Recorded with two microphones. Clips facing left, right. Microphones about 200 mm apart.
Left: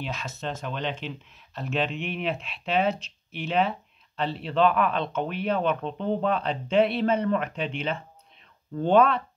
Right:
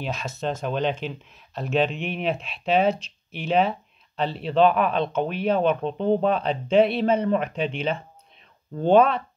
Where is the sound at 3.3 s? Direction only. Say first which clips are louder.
Right 4 dB; 40° right (ahead or behind).